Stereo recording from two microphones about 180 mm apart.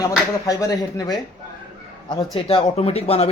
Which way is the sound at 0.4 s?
20° left (ahead or behind).